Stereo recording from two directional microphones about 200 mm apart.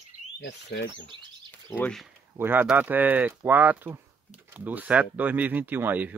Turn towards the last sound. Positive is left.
turn(degrees=-10)  # may be behind; listen again after turning